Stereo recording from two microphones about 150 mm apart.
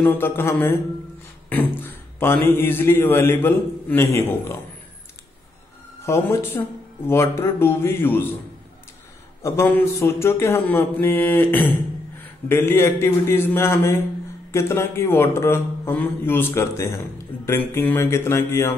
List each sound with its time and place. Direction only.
0.0 s speech: 15° left (ahead or behind)
6.0 s speech: 15° left (ahead or behind)
9.4 s speech: 15° left (ahead or behind)